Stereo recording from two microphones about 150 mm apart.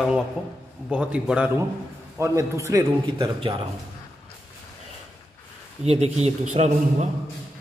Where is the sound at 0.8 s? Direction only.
5° right (ahead or behind).